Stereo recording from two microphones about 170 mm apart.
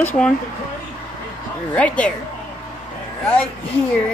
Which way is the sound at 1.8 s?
5° left (ahead or behind).